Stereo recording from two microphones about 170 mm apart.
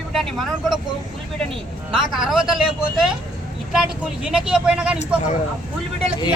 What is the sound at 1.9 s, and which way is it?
Speech, centre (ahead or behind).